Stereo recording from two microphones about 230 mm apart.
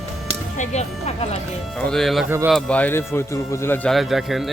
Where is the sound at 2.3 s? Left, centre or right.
Centre.